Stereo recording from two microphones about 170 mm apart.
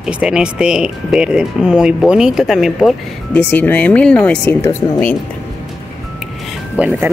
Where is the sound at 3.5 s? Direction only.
10° left (ahead or behind).